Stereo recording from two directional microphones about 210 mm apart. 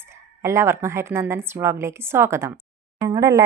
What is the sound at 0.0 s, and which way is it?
A woman's voice, 15° right (ahead or behind).